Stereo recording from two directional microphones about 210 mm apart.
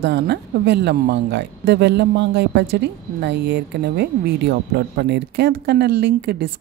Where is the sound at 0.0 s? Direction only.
55° right (ahead or behind).